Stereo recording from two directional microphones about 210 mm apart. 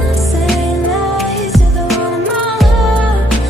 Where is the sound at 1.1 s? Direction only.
Centre (ahead or behind).